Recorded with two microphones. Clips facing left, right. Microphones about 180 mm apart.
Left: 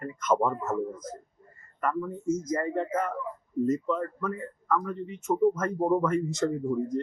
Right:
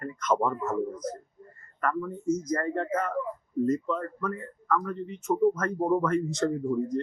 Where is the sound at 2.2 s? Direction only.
25° left (ahead or behind).